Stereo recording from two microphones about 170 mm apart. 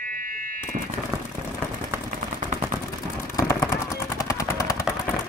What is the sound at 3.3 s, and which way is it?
Machine gun, 20° left (ahead or behind).